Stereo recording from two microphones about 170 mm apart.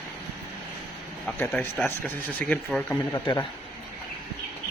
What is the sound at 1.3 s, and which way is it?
Speech, 5° left (ahead or behind).